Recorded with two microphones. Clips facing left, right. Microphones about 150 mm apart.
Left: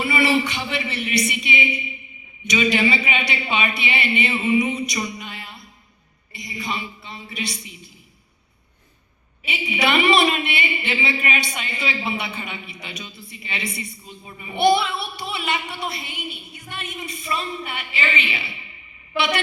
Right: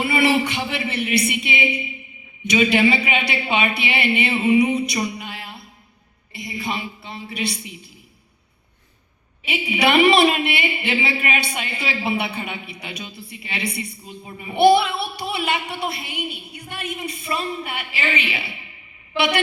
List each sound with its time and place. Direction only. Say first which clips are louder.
0.0 s a woman's voice: right 2 dB; 60° right (ahead or behind)
9.5 s a woman's voice: right 3 dB; 60° right (ahead or behind)